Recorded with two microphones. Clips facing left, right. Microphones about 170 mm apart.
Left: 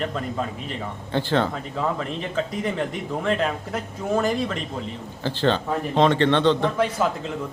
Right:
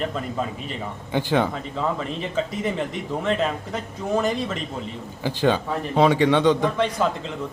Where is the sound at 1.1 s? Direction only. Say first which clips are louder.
Right 1 dB; 15° right (ahead or behind).